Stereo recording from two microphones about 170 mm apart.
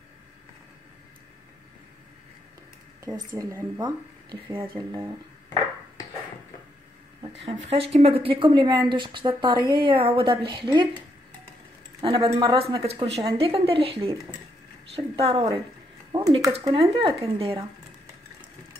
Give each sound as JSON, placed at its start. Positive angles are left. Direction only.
{"t": 3.3, "sound": "a woman's voice", "side_deg": -15}
{"t": 7.7, "sound": "a woman's voice", "side_deg": -35}
{"t": 12.0, "sound": "speech", "side_deg": -30}
{"t": 16.1, "sound": "a sound", "side_deg": -25}
{"t": 16.5, "sound": "speech", "side_deg": -35}